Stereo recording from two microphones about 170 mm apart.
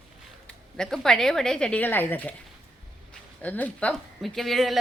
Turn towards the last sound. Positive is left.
turn(degrees=0)  # may be behind; listen again after turning